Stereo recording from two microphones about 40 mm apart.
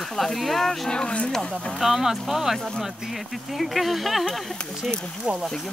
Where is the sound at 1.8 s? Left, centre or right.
Centre.